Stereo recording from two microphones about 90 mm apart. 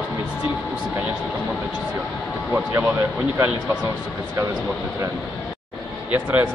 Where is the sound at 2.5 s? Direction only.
20° right (ahead or behind).